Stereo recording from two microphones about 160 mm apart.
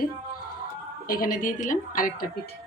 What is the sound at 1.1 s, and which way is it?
A woman's voice, 60° left (ahead or behind).